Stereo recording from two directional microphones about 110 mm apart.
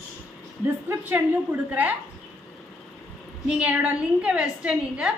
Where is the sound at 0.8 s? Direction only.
20° right (ahead or behind).